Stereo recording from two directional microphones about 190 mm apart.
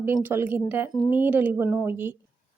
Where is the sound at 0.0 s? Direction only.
10° right (ahead or behind).